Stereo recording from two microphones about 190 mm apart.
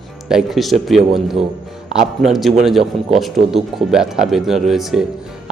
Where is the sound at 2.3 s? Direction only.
Centre (ahead or behind).